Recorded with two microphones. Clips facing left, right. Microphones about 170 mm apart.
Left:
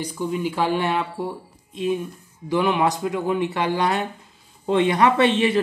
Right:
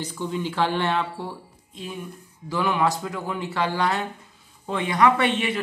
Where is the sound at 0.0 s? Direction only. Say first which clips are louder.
Left 3 dB; 10° left (ahead or behind).